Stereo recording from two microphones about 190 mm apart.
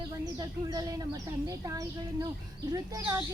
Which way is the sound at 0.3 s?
20° right (ahead or behind).